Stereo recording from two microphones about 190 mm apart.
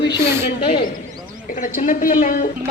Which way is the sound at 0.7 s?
50° left (ahead or behind).